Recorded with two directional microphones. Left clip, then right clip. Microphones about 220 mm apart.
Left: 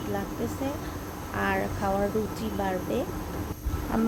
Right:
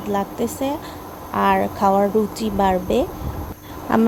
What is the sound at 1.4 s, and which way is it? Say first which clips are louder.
Speech: right 11 dB; 30° right (ahead or behind).